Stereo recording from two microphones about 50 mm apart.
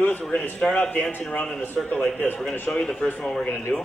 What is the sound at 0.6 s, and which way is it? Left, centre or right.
Speech, centre.